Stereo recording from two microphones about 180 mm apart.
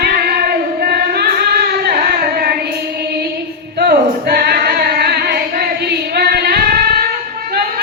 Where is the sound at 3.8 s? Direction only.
60° right (ahead or behind).